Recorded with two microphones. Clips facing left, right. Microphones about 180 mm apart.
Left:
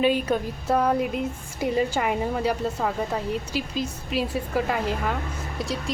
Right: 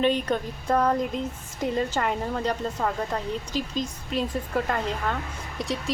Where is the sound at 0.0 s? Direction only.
5° left (ahead or behind).